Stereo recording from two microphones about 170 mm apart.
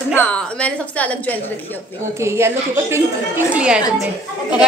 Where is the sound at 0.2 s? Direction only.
5° left (ahead or behind).